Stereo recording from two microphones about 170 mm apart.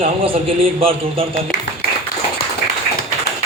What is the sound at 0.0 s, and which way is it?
Speech, 35° right (ahead or behind).